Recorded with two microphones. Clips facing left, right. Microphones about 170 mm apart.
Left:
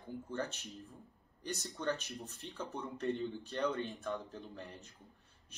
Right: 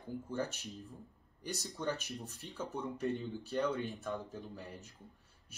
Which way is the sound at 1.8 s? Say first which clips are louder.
Even; 10° right (ahead or behind).